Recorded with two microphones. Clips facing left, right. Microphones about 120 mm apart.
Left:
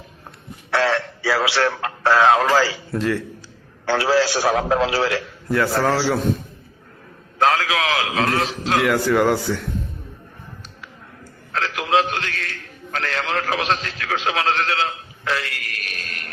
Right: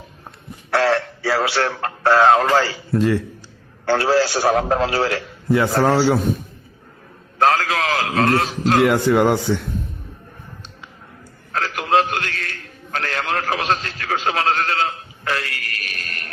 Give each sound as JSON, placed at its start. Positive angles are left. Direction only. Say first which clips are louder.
{"t": 0.7, "sound": "a man's voice", "louder": "right 2 dB", "side_deg": 0}
{"t": 3.0, "sound": "a man's voice", "louder": "right 4 dB", "side_deg": -15}
{"t": 3.8, "sound": "a man's voice", "louder": "right 1 dB", "side_deg": 0}
{"t": 7.3, "sound": "a man's voice", "louder": "right 1 dB", "side_deg": 0}
{"t": 9.0, "sound": "speech", "louder": "right 2 dB", "side_deg": -20}
{"t": 11.5, "sound": "a man's voice", "louder": "right 1 dB", "side_deg": 0}